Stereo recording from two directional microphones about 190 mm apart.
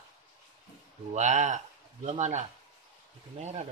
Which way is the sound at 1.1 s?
40° right (ahead or behind).